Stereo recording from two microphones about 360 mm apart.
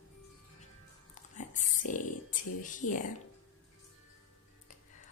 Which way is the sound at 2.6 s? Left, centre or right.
Left.